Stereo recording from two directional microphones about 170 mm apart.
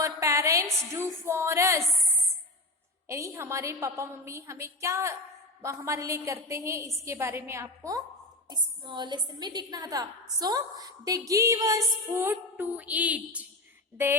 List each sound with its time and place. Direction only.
0.0 s a woman's voice: 20° right (ahead or behind)
3.1 s a woman's voice: 15° right (ahead or behind)